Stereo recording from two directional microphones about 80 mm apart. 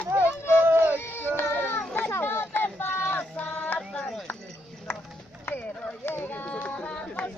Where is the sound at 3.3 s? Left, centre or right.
Centre.